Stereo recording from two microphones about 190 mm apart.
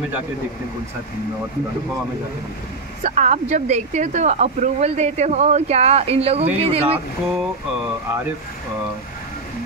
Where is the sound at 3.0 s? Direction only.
40° right (ahead or behind).